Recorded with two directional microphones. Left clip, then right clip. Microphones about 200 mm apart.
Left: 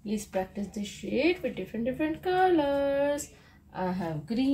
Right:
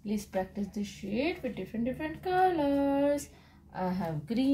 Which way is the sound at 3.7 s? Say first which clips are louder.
Left 2 dB; 10° right (ahead or behind).